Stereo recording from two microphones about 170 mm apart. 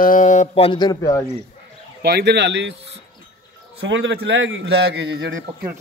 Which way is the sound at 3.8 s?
90° right.